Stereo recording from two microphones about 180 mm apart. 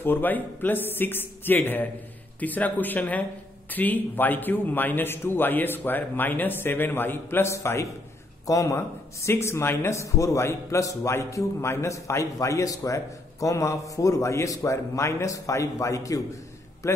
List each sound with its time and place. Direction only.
0.0 s speech: 10° left (ahead or behind)